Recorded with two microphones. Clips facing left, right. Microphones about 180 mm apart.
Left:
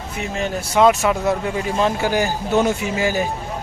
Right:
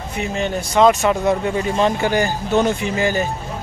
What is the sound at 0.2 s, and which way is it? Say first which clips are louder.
Speech: right 2 dB; 5° left (ahead or behind).